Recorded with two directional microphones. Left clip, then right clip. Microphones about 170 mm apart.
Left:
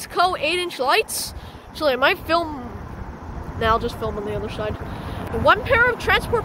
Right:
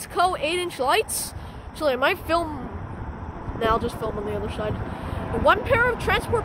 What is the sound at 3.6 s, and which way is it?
Speech, centre (ahead or behind).